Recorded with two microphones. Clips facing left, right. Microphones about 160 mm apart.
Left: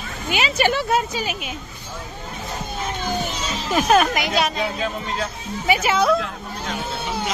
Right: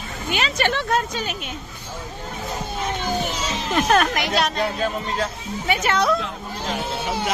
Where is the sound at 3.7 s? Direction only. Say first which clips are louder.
Left 2 dB; 5° left (ahead or behind).